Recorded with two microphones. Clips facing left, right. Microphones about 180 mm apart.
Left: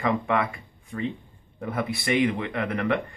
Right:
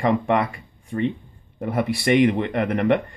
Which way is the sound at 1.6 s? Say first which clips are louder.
Right 5 dB; 70° right (ahead or behind).